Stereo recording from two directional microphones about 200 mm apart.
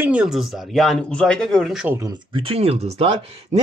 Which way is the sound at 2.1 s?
25° right (ahead or behind).